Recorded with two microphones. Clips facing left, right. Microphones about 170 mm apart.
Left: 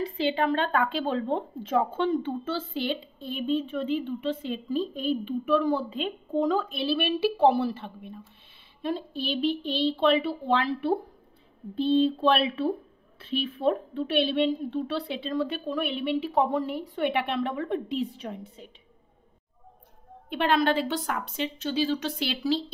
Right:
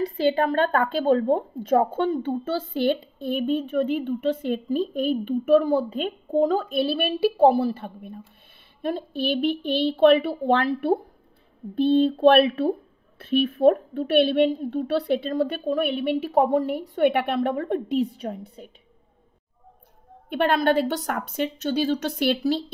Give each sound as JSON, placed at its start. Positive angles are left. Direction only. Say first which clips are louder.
{"t": 0.0, "sound": "a woman's voice", "louder": "right 4 dB", "side_deg": -45}
{"t": 20.2, "sound": "a woman's voice", "louder": "right 3 dB", "side_deg": -50}